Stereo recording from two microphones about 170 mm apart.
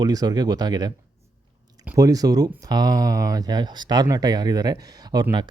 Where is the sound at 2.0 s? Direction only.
20° right (ahead or behind).